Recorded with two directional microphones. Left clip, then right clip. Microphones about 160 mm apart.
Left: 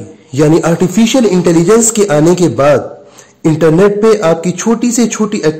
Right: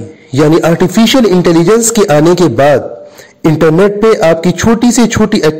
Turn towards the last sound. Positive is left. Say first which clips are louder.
# right 3 dB
turn(degrees=-30)  # may be behind; listen again after turning